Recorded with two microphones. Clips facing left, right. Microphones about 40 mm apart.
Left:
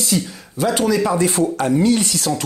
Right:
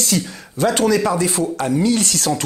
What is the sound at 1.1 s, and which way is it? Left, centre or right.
Speech, left.